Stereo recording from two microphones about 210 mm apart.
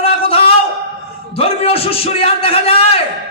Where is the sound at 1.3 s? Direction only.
30° left (ahead or behind).